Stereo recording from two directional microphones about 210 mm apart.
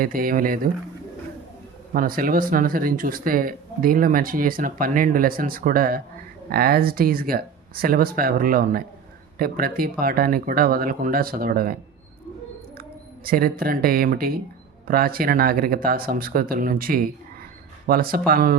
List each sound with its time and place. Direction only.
0.0 s speech: 45° right (ahead or behind)
1.9 s speech: 40° right (ahead or behind)
13.2 s speech: 45° right (ahead or behind)